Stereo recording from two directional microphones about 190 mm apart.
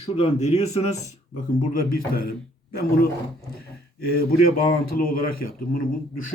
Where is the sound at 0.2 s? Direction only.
35° left (ahead or behind).